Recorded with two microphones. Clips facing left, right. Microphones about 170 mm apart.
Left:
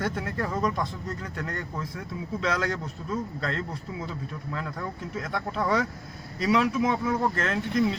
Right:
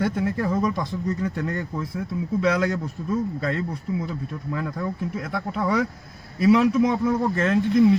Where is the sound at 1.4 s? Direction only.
25° right (ahead or behind).